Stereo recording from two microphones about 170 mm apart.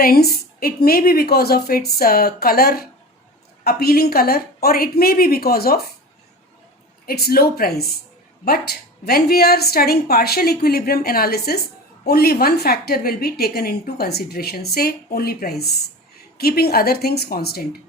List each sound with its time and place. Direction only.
0.0 s a woman's voice: 65° left (ahead or behind)
7.0 s a woman's voice: 65° left (ahead or behind)